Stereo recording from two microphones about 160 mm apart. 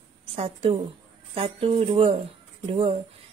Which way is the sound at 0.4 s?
40° right (ahead or behind).